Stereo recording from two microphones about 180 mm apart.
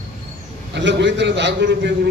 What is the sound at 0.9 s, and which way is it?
A man's voice, 80° right.